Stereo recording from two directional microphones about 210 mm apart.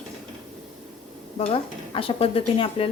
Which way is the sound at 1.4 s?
25° left (ahead or behind).